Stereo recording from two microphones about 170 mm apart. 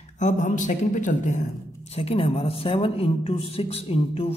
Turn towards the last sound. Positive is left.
turn(degrees=35)  # may be behind; listen again after turning